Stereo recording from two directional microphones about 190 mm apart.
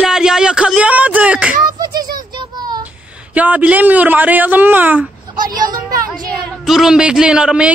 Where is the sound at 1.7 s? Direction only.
20° right (ahead or behind).